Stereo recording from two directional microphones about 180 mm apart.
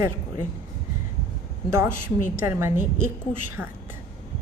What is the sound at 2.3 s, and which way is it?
Speech, 15° right (ahead or behind).